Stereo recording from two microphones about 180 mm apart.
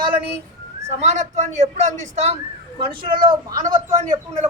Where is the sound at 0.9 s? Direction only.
40° right (ahead or behind).